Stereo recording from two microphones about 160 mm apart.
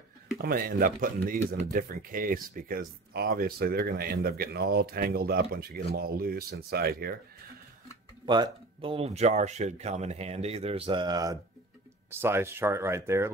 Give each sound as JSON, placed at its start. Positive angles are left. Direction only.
{"t": 0.4, "sound": "speech", "side_deg": -65}
{"t": 8.3, "sound": "speech", "side_deg": -30}